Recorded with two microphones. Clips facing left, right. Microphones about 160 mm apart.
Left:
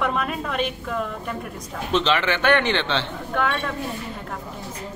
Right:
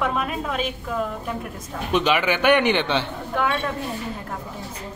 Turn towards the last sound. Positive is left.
turn(degrees=-10)  # may be behind; listen again after turning